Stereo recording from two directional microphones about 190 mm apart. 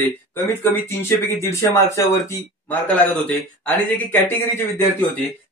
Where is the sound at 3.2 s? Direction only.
10° left (ahead or behind).